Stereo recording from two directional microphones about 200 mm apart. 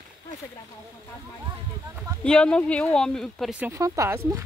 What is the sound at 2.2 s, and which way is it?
Speech, 5° left (ahead or behind).